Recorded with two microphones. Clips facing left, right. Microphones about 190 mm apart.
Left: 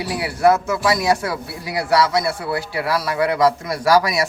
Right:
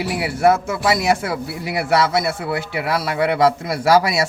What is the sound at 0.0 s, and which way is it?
Speech, 25° right (ahead or behind).